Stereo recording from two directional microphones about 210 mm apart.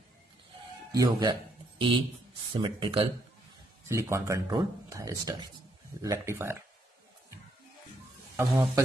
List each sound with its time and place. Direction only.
0.9 s speech: 20° right (ahead or behind)
3.9 s speech: 15° right (ahead or behind)
8.4 s speech: 15° right (ahead or behind)